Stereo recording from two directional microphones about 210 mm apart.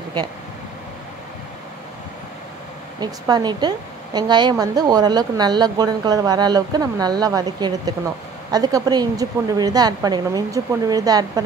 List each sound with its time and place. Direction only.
3.0 s a woman's voice: 20° right (ahead or behind)